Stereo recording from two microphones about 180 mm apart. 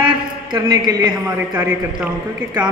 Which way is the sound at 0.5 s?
20° right (ahead or behind).